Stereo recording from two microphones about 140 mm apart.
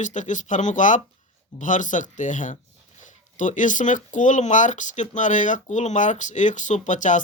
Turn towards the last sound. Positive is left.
turn(degrees=60)  # may be behind; listen again after turning